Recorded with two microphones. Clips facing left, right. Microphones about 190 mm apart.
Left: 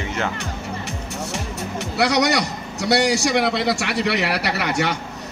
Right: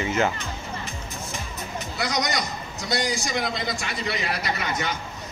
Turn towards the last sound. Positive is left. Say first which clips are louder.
# left 5 dB
turn(degrees=70)  # may be behind; listen again after turning